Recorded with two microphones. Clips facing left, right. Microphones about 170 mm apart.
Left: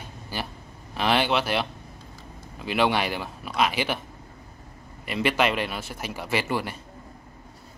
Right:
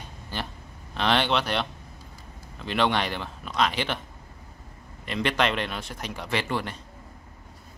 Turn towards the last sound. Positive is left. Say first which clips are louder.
# left 2 dB
turn(degrees=5)  # may be behind; listen again after turning